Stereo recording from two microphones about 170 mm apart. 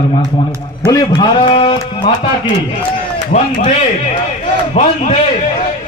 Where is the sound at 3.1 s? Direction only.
45° left (ahead or behind).